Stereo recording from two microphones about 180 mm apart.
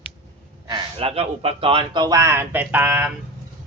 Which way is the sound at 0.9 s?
35° right (ahead or behind).